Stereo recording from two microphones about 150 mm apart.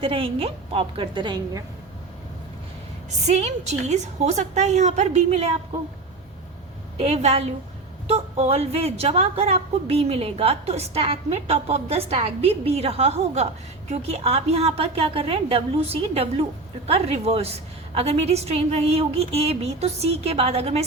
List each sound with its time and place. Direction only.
0.0 s a woman's voice: 40° right (ahead or behind)
3.1 s a woman's voice: 50° right (ahead or behind)
7.0 s a woman's voice: 45° right (ahead or behind)